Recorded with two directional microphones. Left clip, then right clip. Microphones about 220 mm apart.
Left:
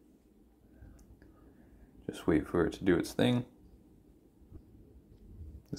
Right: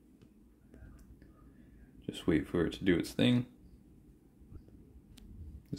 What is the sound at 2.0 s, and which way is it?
Speech, 10° right (ahead or behind).